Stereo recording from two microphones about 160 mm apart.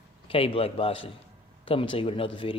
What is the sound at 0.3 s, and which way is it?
Speech, 35° left (ahead or behind).